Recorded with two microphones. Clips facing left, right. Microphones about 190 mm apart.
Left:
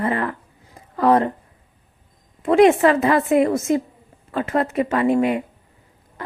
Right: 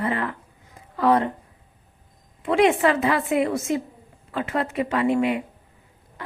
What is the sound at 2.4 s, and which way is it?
A woman's voice, 45° left (ahead or behind).